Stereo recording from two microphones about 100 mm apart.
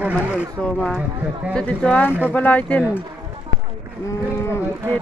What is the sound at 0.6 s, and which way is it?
Speech, 10° left (ahead or behind).